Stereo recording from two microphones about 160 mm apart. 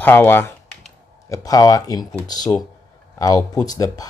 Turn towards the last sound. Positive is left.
turn(degrees=25)  # may be behind; listen again after turning